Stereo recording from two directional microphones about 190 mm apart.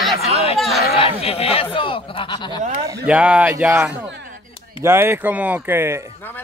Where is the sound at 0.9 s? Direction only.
30° left (ahead or behind).